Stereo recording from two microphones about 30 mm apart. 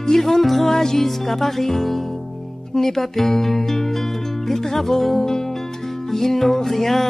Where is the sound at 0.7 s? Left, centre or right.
Centre.